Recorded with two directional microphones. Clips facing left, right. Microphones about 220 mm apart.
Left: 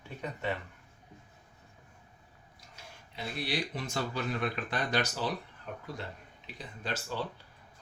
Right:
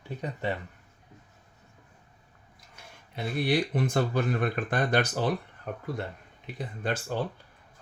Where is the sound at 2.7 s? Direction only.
55° right (ahead or behind).